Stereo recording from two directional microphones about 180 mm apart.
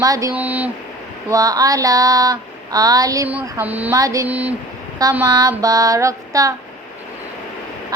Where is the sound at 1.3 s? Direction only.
20° right (ahead or behind).